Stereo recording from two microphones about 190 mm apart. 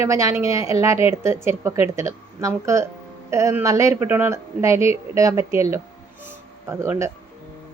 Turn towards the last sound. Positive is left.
turn(degrees=-15)  # may be behind; listen again after turning